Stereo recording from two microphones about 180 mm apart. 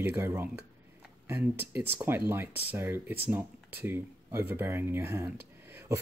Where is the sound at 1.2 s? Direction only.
10° right (ahead or behind).